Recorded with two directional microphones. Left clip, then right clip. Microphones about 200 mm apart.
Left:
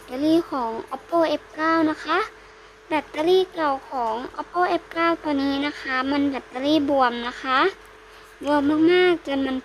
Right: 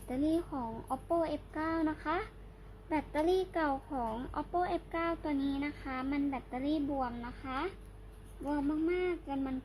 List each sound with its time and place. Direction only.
0.2 s a child's voice: 20° left (ahead or behind)
2.9 s speech: 5° left (ahead or behind); by 9.4 s 40° left (ahead or behind)